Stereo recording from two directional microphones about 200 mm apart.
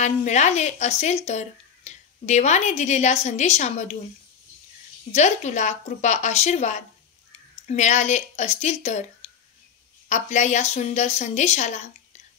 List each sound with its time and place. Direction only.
0.0 s speech: 35° left (ahead or behind)
5.1 s speech: 35° left (ahead or behind)
9.2 s a sound: 30° left (ahead or behind)
10.0 s speech: 35° left (ahead or behind)